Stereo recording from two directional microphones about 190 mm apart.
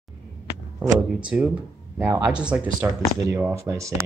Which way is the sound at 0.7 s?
5° right (ahead or behind).